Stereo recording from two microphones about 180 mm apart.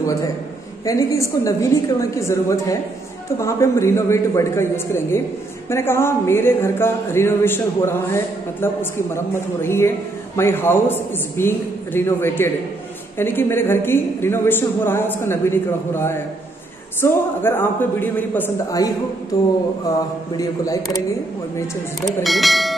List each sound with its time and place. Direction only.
0.8 s speech: 15° left (ahead or behind)
22.2 s speech: centre (ahead or behind)